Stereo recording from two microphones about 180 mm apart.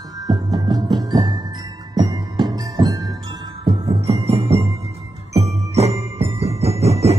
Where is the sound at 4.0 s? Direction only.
35° right (ahead or behind).